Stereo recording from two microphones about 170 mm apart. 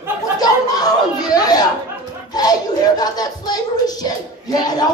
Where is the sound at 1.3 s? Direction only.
20° left (ahead or behind).